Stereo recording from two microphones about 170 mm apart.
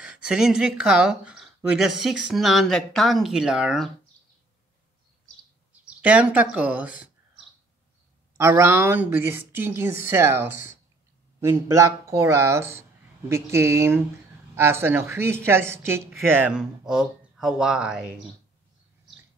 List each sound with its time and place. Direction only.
0.0 s speech: 5° right (ahead or behind)
5.7 s a sound: 10° right (ahead or behind)
8.4 s speech: 15° right (ahead or behind)